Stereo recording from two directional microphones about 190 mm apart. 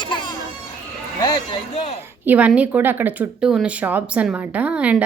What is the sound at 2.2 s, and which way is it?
Speech, 5° right (ahead or behind).